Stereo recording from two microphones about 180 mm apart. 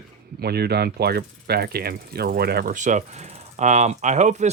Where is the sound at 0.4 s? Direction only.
60° right (ahead or behind).